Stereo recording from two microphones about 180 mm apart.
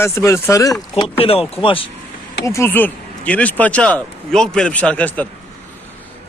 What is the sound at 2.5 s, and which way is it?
Speech, 15° left (ahead or behind).